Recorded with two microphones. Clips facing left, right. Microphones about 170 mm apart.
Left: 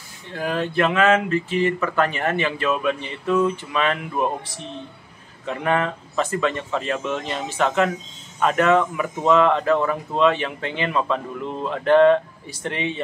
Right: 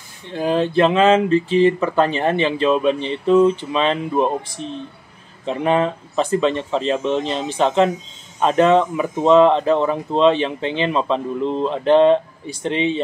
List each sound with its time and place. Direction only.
0.3 s speech: 25° right (ahead or behind)
5.4 s speech: 20° right (ahead or behind)